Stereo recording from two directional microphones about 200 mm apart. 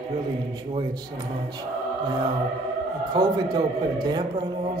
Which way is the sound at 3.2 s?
20° right (ahead or behind).